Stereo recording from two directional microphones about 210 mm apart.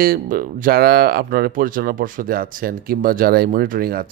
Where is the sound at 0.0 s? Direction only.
40° right (ahead or behind).